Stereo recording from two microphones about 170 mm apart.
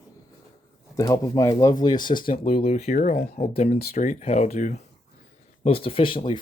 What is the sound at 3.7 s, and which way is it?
Speech, 55° left (ahead or behind).